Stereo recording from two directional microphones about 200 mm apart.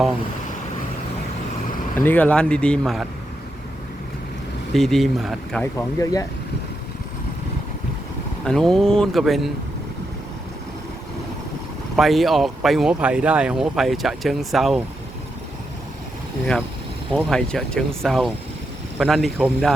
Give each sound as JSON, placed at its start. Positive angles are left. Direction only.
{"t": 2.0, "sound": "speech", "side_deg": 5}
{"t": 4.7, "sound": "speech", "side_deg": 0}
{"t": 5.7, "sound": "speech", "side_deg": 15}
{"t": 8.4, "sound": "speech", "side_deg": 5}
{"t": 11.9, "sound": "speech", "side_deg": 0}
{"t": 17.2, "sound": "speech", "side_deg": 0}